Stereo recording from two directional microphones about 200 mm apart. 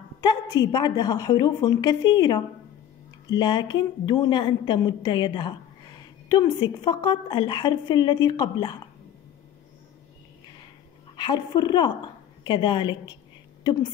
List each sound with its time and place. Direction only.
0.2 s a woman's voice: 20° left (ahead or behind)
11.1 s a woman's voice: 20° left (ahead or behind)